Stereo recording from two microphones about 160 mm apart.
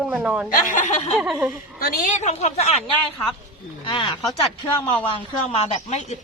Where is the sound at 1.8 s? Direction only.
60° left (ahead or behind); by 2.8 s 40° left (ahead or behind).